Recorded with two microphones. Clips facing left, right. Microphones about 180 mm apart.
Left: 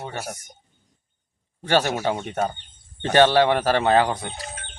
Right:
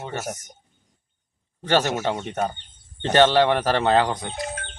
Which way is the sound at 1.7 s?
10° left (ahead or behind).